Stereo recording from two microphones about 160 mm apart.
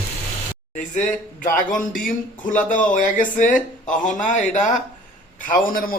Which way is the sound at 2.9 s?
55° left (ahead or behind).